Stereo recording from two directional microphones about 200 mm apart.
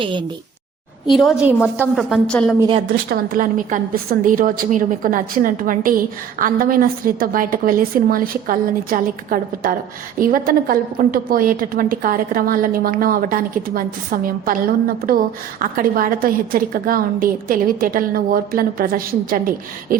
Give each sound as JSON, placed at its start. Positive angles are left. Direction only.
{"t": 0.0, "sound": "a woman's voice", "side_deg": -25}
{"t": 1.0, "sound": "a woman's voice", "side_deg": 0}
{"t": 2.6, "sound": "a woman's voice", "side_deg": -25}
{"t": 2.9, "sound": "a woman's voice", "side_deg": -50}